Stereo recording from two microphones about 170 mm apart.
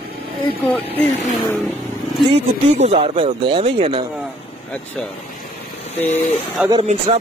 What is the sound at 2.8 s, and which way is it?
Speech, 40° right (ahead or behind).